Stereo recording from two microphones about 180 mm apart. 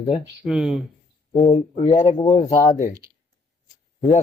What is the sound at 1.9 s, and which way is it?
Speech, 25° left (ahead or behind).